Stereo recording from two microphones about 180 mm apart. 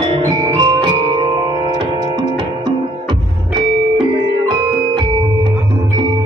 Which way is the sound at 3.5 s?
25° right (ahead or behind).